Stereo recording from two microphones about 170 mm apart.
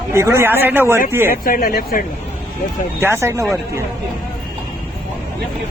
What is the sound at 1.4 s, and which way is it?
Speech, 55° left (ahead or behind).